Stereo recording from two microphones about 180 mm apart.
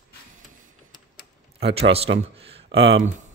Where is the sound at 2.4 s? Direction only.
30° right (ahead or behind).